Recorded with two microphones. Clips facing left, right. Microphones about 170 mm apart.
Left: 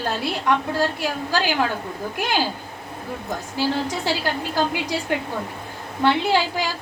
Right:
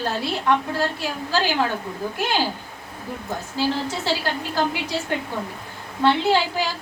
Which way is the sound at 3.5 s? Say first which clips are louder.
Left 1 dB; 15° left (ahead or behind).